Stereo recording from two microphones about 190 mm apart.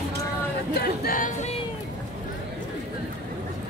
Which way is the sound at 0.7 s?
50° left (ahead or behind).